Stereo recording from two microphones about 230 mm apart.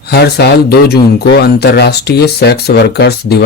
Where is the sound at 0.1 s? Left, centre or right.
Left.